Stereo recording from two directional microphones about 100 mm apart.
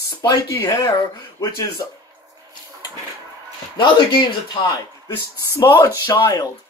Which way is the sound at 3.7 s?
55° left (ahead or behind).